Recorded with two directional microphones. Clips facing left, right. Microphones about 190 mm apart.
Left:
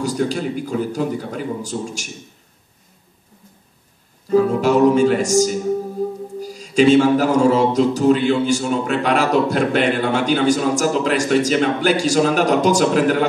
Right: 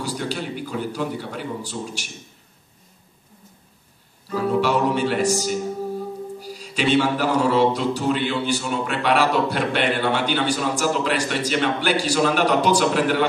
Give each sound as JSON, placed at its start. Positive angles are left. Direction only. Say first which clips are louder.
{"t": 0.0, "sound": "a man's voice", "louder": "left 7 dB", "side_deg": 45}
{"t": 4.3, "sound": "a man's voice", "louder": "left 6 dB", "side_deg": 45}